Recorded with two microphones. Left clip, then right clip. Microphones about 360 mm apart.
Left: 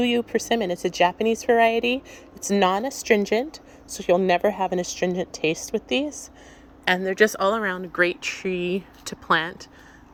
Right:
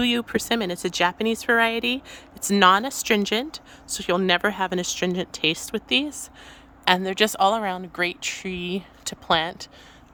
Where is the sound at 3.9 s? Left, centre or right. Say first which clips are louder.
Left 2 dB; centre.